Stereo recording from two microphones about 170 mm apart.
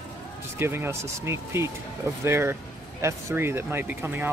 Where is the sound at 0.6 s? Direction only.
15° right (ahead or behind).